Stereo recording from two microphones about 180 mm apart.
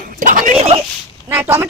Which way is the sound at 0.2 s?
45° right (ahead or behind).